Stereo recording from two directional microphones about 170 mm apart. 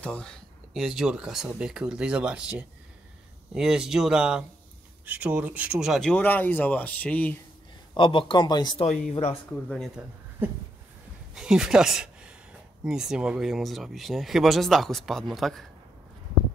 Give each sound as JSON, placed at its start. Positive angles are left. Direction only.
{"t": 0.0, "sound": "speech", "side_deg": 5}
{"t": 7.9, "sound": "speech", "side_deg": 30}
{"t": 8.8, "sound": "speech", "side_deg": 50}
{"t": 9.1, "sound": "speech", "side_deg": 35}
{"t": 9.5, "sound": "speech", "side_deg": 5}
{"t": 10.4, "sound": "a sound", "side_deg": -10}
{"t": 11.3, "sound": "speech", "side_deg": -5}